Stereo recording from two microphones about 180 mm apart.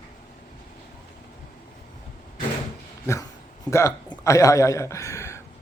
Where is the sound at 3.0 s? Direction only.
20° left (ahead or behind).